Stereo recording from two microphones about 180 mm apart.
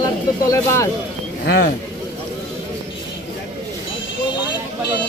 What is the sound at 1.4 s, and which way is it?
Speech, 65° left (ahead or behind).